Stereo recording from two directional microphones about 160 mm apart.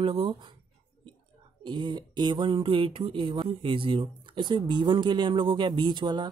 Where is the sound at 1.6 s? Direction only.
30° right (ahead or behind).